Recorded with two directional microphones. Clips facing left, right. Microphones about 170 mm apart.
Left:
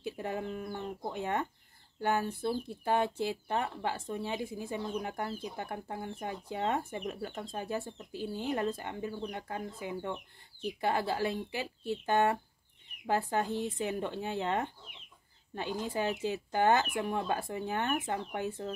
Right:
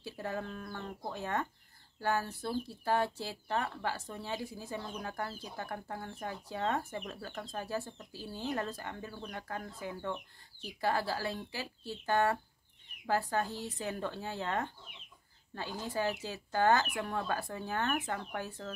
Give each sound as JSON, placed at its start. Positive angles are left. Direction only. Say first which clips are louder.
{"t": 0.0, "sound": "speech", "louder": "left 3 dB", "side_deg": 20}